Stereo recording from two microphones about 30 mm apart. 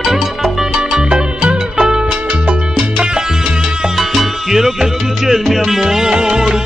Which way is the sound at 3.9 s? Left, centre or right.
Centre.